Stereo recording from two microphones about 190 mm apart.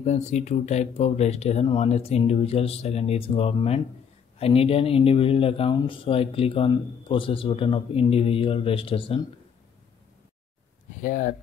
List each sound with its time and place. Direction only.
0.0 s speech: 35° left (ahead or behind)
11.0 s speech: 45° left (ahead or behind)